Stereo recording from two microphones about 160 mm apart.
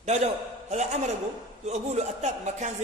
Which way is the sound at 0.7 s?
45° right (ahead or behind).